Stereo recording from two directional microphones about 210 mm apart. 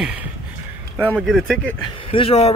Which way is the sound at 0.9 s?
5° left (ahead or behind).